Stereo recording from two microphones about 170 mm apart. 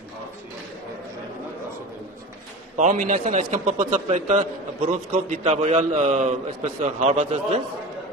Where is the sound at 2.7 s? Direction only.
45° right (ahead or behind).